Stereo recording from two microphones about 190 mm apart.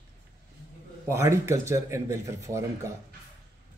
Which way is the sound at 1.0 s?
15° right (ahead or behind).